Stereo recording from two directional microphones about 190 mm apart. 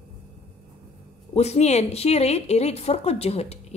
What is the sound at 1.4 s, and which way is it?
A woman's voice, 35° left (ahead or behind).